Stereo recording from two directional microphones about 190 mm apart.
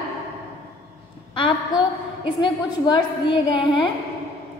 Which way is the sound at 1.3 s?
25° left (ahead or behind).